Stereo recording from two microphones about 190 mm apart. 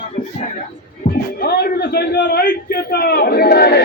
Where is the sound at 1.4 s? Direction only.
55° left (ahead or behind).